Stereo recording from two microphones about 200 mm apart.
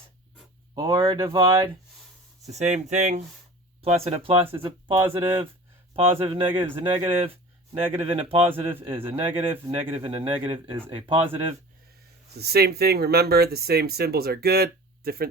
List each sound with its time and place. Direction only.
0.8 s speech: 20° right (ahead or behind)
2.5 s speech: 35° right (ahead or behind)
12.3 s speech: 50° right (ahead or behind)